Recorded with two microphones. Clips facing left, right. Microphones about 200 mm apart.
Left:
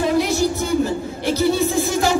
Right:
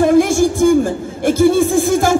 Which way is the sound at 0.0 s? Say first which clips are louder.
Right 7 dB; 50° right (ahead or behind).